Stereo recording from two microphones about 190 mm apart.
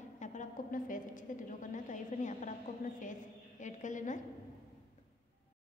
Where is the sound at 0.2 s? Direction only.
40° left (ahead or behind).